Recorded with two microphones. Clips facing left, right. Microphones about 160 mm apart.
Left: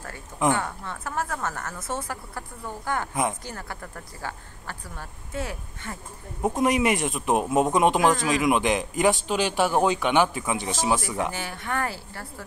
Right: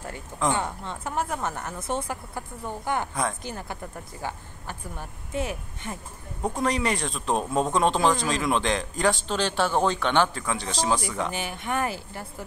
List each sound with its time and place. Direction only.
0.5 s a woman's voice: 20° right (ahead or behind)
6.4 s speech: 20° left (ahead or behind)
11.3 s a woman's voice: 20° right (ahead or behind)